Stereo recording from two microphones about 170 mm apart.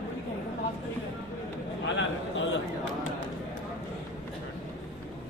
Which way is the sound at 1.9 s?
90° left.